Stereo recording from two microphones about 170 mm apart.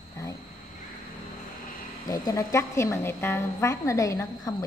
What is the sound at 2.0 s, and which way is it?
Speech, 20° left (ahead or behind).